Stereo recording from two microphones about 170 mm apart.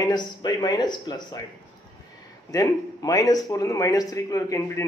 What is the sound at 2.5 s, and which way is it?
Speech, 20° left (ahead or behind).